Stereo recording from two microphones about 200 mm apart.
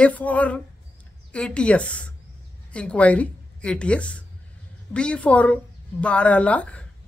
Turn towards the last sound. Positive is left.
turn(degrees=5)  # may be behind; listen again after turning